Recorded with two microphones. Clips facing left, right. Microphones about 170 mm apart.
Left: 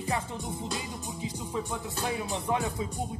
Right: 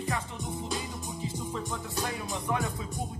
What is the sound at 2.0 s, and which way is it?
Music, 20° left (ahead or behind).